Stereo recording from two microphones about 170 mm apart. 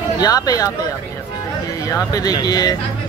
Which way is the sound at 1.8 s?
20° left (ahead or behind).